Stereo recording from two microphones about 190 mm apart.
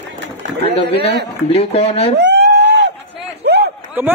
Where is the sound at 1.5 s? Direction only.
30° left (ahead or behind).